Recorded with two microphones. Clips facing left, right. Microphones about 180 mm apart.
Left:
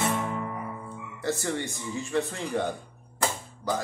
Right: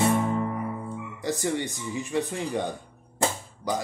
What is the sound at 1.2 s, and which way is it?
Speech, 15° right (ahead or behind).